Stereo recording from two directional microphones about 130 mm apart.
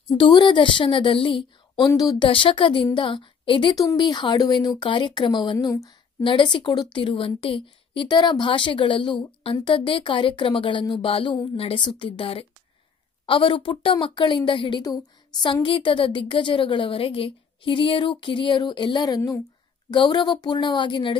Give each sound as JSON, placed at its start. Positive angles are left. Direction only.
{"t": 0.2, "sound": "a woman's voice", "side_deg": 35}
{"t": 2.2, "sound": "a woman's voice", "side_deg": 40}
{"t": 6.2, "sound": "a woman's voice", "side_deg": 40}